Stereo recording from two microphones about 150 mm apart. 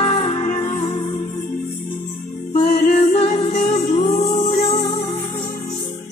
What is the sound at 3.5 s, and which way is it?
Music, 45° left (ahead or behind).